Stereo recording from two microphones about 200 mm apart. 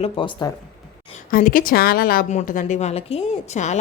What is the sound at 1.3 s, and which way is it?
A woman's voice, 45° left (ahead or behind).